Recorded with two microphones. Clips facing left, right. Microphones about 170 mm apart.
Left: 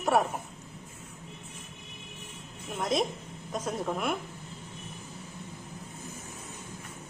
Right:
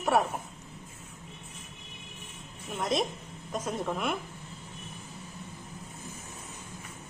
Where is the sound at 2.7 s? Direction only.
Centre (ahead or behind).